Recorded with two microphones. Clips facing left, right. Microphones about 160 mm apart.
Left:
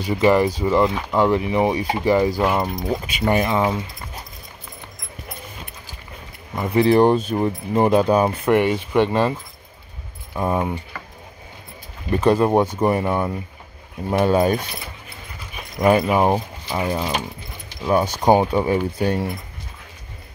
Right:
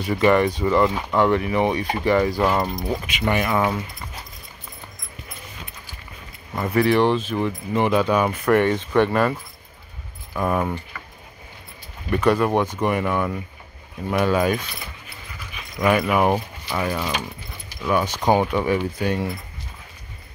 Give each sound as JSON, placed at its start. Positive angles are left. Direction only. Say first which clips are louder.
{"t": 0.5, "sound": "speech", "louder": "left 1 dB", "side_deg": 0}
{"t": 1.9, "sound": "speech", "louder": "left 2 dB", "side_deg": 20}
{"t": 2.3, "sound": "speech", "louder": "even", "side_deg": 5}
{"t": 3.1, "sound": "speech", "louder": "left 3 dB", "side_deg": 35}
{"t": 3.5, "sound": "speech", "louder": "left 1 dB", "side_deg": 20}
{"t": 6.5, "sound": "speech", "louder": "left 1 dB", "side_deg": 15}
{"t": 6.8, "sound": "speech", "louder": "left 3 dB", "side_deg": 35}
{"t": 8.5, "sound": "speech", "louder": "left 1 dB", "side_deg": 15}
{"t": 12.1, "sound": "speech", "louder": "left 2 dB", "side_deg": 30}
{"t": 17.8, "sound": "speech", "louder": "left 3 dB", "side_deg": 35}